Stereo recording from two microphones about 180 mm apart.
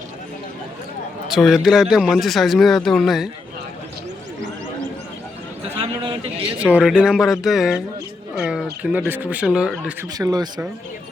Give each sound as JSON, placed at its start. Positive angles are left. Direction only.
{"t": 1.3, "sound": "speech", "side_deg": 0}
{"t": 5.6, "sound": "a sound", "side_deg": -30}
{"t": 6.7, "sound": "speech", "side_deg": -5}
{"t": 10.2, "sound": "speech", "side_deg": -20}